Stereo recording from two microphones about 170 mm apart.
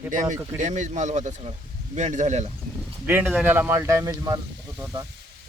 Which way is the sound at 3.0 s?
10° right (ahead or behind).